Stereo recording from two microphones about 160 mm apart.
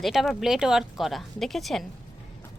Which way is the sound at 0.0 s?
Centre (ahead or behind).